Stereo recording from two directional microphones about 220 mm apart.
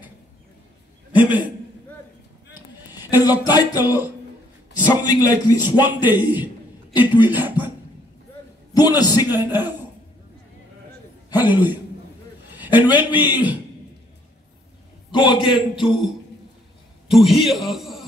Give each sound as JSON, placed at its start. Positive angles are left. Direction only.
{"t": 1.1, "sound": "a man's voice", "side_deg": -5}
{"t": 3.0, "sound": "a sound", "side_deg": -10}
{"t": 3.3, "sound": "a man's voice", "side_deg": 20}
{"t": 3.8, "sound": "a man's voice", "side_deg": -10}
{"t": 5.0, "sound": "a man's voice", "side_deg": 15}
{"t": 5.9, "sound": "a man's voice", "side_deg": -10}
{"t": 8.7, "sound": "a man's voice", "side_deg": 15}
{"t": 9.2, "sound": "a man's voice", "side_deg": -10}
{"t": 11.3, "sound": "a man's voice", "side_deg": -10}
{"t": 15.0, "sound": "a man's voice", "side_deg": 20}
{"t": 15.5, "sound": "speech", "side_deg": 0}
{"t": 17.1, "sound": "speech", "side_deg": 0}